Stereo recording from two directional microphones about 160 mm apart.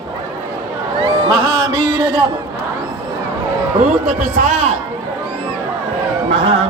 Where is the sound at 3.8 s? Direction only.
50° right (ahead or behind).